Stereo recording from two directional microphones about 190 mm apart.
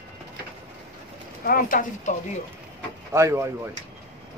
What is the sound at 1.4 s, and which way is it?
Speech, 45° left (ahead or behind).